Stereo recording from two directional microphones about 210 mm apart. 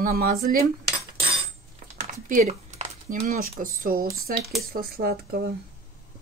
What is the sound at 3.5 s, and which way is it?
Speech, 40° right (ahead or behind).